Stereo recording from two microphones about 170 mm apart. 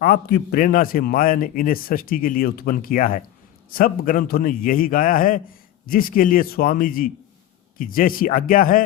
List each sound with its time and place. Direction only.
0.0 s a man's voice: 60° left (ahead or behind)